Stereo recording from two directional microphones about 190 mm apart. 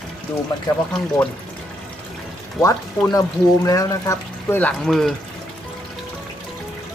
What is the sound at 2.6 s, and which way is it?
Speech, 20° left (ahead or behind).